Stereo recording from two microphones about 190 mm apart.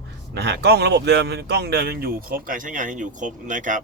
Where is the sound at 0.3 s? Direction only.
60° right (ahead or behind).